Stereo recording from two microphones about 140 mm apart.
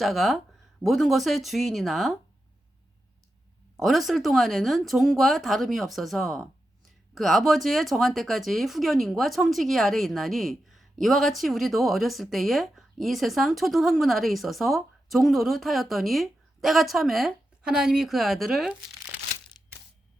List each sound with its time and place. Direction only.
0.0 s speech: centre (ahead or behind)
3.8 s speech: centre (ahead or behind)